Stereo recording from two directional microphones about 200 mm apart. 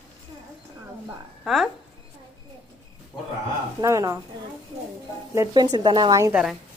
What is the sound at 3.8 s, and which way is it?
Speech, 15° right (ahead or behind).